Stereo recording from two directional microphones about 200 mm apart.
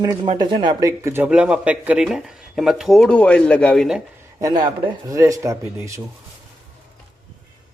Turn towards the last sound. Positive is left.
turn(degrees=-15)  # may be behind; listen again after turning